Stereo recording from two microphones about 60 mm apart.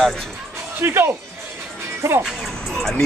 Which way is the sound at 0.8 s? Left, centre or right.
Right.